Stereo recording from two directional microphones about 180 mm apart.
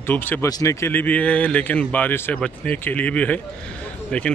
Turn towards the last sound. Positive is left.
turn(degrees=5)  # may be behind; listen again after turning